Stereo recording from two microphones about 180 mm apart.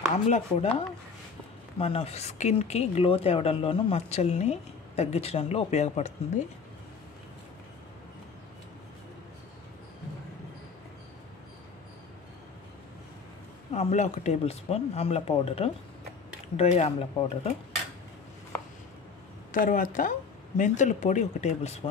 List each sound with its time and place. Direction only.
0.1 s speech: 40° left (ahead or behind)
13.7 s speech: 35° left (ahead or behind)
19.5 s speech: 50° left (ahead or behind)